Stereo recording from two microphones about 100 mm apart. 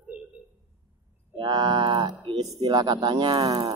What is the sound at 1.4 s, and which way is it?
Speech, 45° right (ahead or behind).